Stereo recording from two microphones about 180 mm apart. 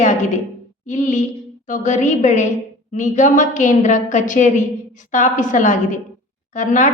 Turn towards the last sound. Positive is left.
turn(degrees=45)  # may be behind; listen again after turning